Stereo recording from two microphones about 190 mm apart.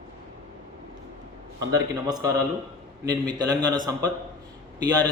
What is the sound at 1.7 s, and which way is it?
A man's voice, 20° right (ahead or behind).